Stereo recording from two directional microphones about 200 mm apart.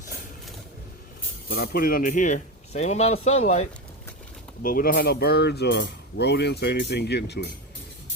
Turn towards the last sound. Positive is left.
turn(degrees=55)  # may be behind; listen again after turning